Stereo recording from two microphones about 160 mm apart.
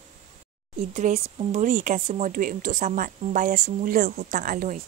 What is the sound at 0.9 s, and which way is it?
Speech, 45° right (ahead or behind).